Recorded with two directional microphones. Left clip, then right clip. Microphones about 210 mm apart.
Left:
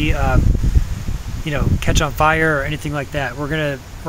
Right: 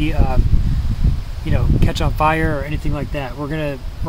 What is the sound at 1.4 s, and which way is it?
Speech, 5° right (ahead or behind).